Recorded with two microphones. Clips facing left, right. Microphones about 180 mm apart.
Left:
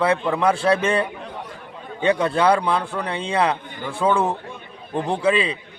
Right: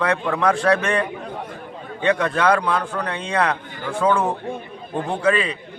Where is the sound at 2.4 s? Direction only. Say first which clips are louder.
Left 1 dB; 10° left (ahead or behind).